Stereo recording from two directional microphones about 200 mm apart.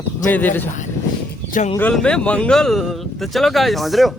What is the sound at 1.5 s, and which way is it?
Speech, 35° left (ahead or behind).